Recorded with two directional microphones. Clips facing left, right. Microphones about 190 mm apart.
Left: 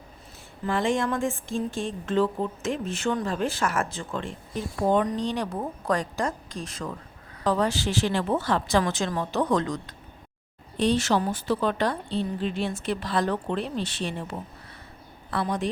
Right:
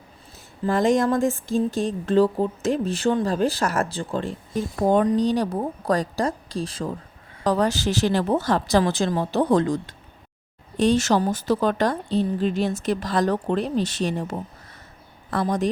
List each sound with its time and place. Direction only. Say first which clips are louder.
0.6 s speech: right 6 dB; 40° right (ahead or behind)
7.4 s speech: right 3 dB; 40° right (ahead or behind)
10.8 s a woman's voice: right 4 dB; 45° right (ahead or behind)